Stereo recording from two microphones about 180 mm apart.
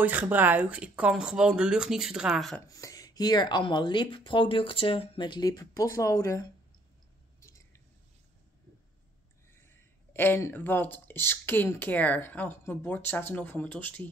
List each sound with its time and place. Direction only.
0.0 s speech: 10° right (ahead or behind)
2.6 s speech: 20° left (ahead or behind)
7.3 s chewing: 15° left (ahead or behind)
9.7 s speech: 10° left (ahead or behind)